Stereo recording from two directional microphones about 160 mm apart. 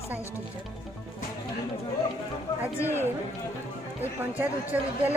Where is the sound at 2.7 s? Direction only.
15° left (ahead or behind).